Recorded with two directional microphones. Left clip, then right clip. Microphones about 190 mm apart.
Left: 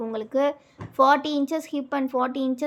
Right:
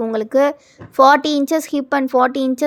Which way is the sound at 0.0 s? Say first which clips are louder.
Right 8 dB; 40° right (ahead or behind).